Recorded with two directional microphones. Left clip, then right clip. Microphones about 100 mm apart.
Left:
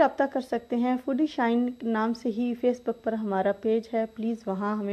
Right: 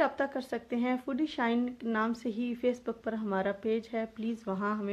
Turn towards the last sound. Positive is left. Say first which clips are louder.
# left 4 dB
turn(degrees=20)  # may be behind; listen again after turning